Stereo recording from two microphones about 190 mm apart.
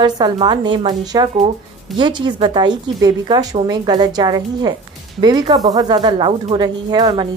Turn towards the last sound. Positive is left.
turn(degrees=-20)  # may be behind; listen again after turning